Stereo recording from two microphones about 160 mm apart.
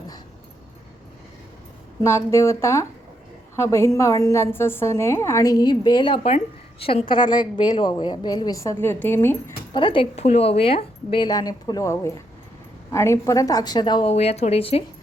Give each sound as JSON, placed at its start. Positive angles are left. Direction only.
{"t": 2.0, "sound": "a woman's voice", "side_deg": 15}
{"t": 9.7, "sound": "a woman's voice", "side_deg": 30}
{"t": 14.1, "sound": "a woman's voice", "side_deg": 40}